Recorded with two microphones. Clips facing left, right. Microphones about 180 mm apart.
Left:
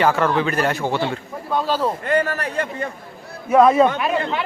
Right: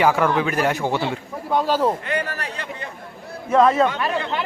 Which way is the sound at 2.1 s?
50° left (ahead or behind).